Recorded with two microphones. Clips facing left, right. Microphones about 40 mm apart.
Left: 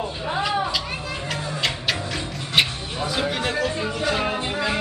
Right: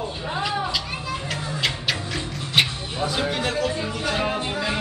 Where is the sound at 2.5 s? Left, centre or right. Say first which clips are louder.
Even; centre.